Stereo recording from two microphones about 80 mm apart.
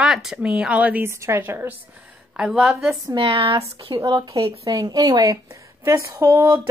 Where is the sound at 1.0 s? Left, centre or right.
Right.